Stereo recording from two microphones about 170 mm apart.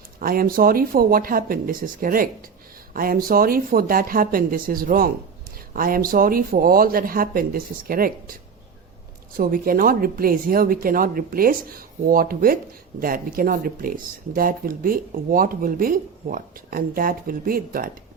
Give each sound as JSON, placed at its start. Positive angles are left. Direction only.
{"t": 0.2, "sound": "speech", "side_deg": -55}
{"t": 9.4, "sound": "speech", "side_deg": -55}